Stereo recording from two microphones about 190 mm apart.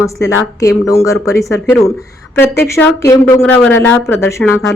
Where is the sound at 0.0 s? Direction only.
15° left (ahead or behind).